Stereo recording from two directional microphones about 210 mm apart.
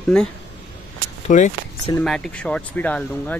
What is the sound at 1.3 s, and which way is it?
Speech, 35° left (ahead or behind).